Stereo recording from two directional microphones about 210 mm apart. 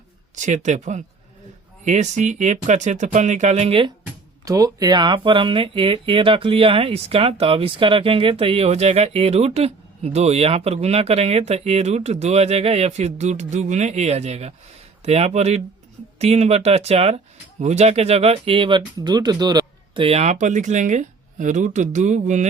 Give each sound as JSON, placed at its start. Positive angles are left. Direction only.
{"t": 0.3, "sound": "speech", "side_deg": -35}